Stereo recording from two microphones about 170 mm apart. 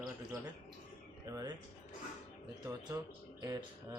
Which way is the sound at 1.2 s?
20° right (ahead or behind).